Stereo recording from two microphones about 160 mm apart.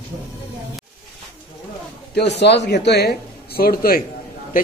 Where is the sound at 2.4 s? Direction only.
90° left.